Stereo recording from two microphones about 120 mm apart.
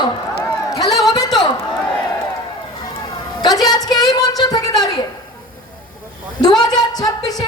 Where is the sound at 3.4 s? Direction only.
35° left (ahead or behind).